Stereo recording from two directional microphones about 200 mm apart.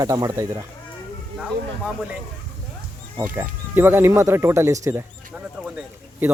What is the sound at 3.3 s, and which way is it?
Speech, 10° right (ahead or behind).